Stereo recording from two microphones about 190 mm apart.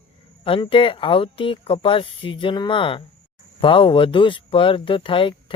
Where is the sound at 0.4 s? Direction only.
25° left (ahead or behind).